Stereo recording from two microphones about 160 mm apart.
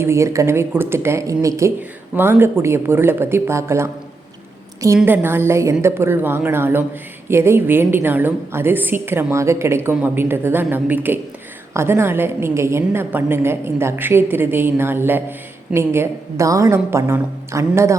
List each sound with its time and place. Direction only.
0.0 s a woman's voice: 15° right (ahead or behind)
5.0 s a woman's voice: 15° right (ahead or behind)